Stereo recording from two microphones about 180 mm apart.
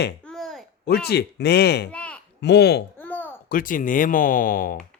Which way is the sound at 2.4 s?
70° left (ahead or behind).